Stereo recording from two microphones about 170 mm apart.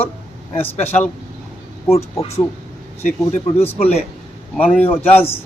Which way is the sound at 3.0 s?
45° left (ahead or behind).